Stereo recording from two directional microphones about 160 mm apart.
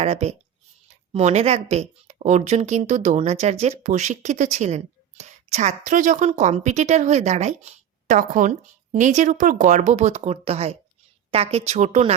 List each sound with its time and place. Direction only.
0.0 s a woman's voice: 40° right (ahead or behind)